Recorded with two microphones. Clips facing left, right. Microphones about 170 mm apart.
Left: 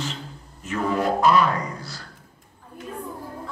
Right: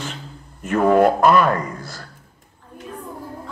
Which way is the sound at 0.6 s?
55° right (ahead or behind).